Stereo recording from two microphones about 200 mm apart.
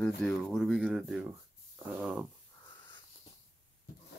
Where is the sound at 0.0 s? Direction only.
5° left (ahead or behind).